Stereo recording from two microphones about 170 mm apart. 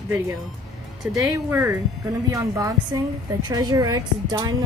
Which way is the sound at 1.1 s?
15° right (ahead or behind).